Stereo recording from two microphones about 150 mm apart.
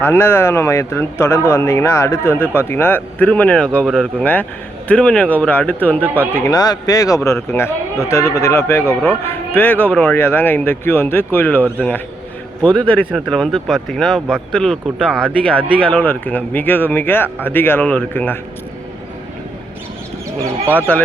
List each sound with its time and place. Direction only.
0.0 s speech: 15° left (ahead or behind)
13.1 s speech: centre (ahead or behind)
20.7 s speech: 10° left (ahead or behind)